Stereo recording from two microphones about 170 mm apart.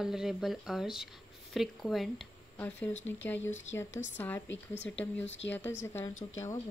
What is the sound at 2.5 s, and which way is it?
A woman's voice, 10° left (ahead or behind).